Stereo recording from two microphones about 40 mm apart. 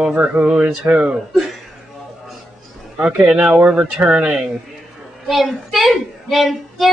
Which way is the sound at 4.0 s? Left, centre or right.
Right.